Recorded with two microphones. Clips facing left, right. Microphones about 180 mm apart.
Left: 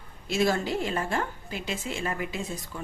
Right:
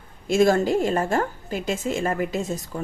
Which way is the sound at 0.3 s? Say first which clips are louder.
Right 7 dB; 45° right (ahead or behind).